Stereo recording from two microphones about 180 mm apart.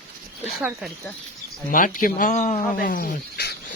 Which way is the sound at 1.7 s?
50° left (ahead or behind).